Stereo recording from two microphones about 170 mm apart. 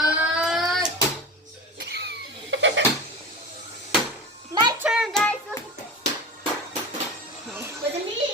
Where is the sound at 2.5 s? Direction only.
90° right.